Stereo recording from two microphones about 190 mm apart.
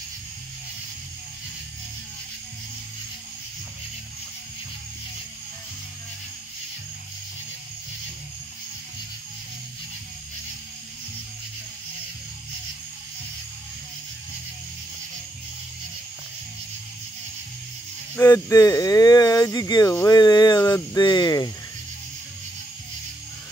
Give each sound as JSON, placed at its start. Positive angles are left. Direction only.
{"t": 18.1, "sound": "speech", "side_deg": 15}